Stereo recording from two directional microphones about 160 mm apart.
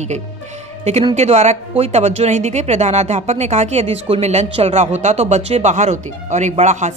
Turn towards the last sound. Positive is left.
turn(degrees=-45)  # may be behind; listen again after turning